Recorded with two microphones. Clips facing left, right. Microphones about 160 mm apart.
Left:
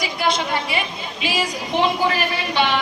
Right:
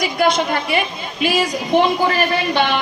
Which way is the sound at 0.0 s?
50° right (ahead or behind).